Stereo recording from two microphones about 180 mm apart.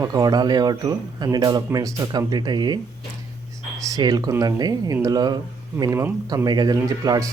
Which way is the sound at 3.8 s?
20° right (ahead or behind).